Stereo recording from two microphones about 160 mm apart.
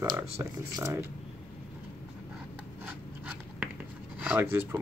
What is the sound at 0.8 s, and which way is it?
Speech, 15° right (ahead or behind).